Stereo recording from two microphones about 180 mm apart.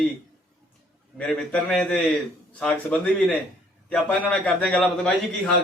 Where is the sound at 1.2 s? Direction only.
5° left (ahead or behind).